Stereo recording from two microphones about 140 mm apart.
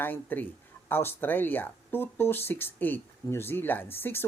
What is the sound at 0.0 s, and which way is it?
Speech, 15° left (ahead or behind).